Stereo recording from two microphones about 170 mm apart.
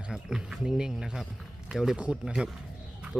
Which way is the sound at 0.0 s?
5° right (ahead or behind).